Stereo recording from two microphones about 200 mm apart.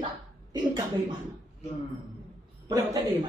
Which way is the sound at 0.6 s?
20° right (ahead or behind).